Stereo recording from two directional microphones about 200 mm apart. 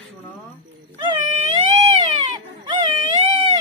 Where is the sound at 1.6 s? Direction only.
25° right (ahead or behind).